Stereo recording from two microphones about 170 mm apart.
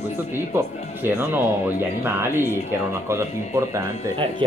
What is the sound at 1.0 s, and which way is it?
Speech, 10° right (ahead or behind).